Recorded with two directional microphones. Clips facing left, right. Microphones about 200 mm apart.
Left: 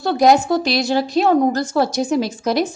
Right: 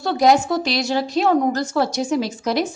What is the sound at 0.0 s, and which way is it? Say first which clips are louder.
Speech: left 2 dB; 50° left (ahead or behind).